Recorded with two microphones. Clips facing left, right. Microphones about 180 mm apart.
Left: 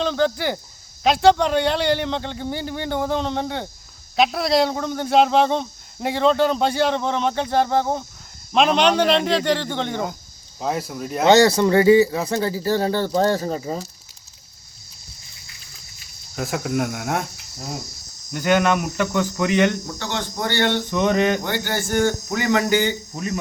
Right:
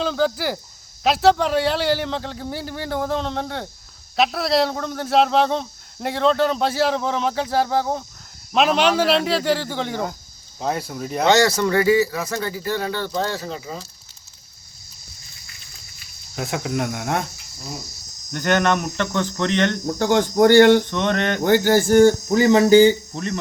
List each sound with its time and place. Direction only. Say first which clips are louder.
0.0 s speech: left 1 dB; 5° right (ahead or behind)
11.3 s speech: left 3 dB; 20° left (ahead or behind); by 13.8 s 40° left (ahead or behind)
16.3 s speech: left 1 dB; centre (ahead or behind)
18.3 s speech: left 1 dB; 5° left (ahead or behind)
19.9 s speech: right 9 dB; 50° right (ahead or behind)
20.9 s speech: left 3 dB; 5° left (ahead or behind)
21.4 s speech: right 9 dB; 45° right (ahead or behind); by 22.9 s 30° right (ahead or behind)
23.1 s speech: even; 5° left (ahead or behind)